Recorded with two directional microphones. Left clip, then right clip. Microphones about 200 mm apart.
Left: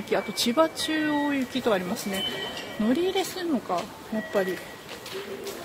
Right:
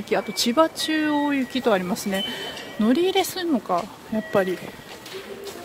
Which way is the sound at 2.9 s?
35° right (ahead or behind).